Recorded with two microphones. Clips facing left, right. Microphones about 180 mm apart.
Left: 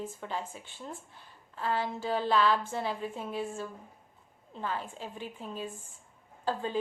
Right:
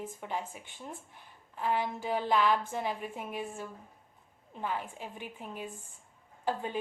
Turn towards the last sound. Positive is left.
turn(degrees=-20)  # may be behind; listen again after turning